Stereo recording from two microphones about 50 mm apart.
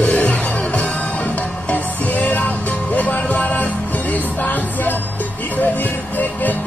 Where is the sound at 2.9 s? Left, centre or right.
Left.